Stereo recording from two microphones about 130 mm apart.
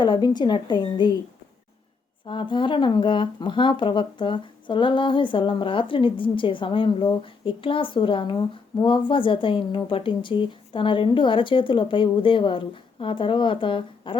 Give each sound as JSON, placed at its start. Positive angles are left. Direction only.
{"t": 0.0, "sound": "speech", "side_deg": 35}
{"t": 2.2, "sound": "speech", "side_deg": 40}